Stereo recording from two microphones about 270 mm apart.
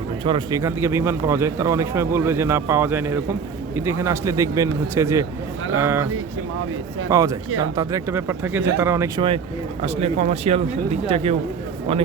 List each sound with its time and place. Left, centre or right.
0.3 s speech: centre
7.1 s speech: centre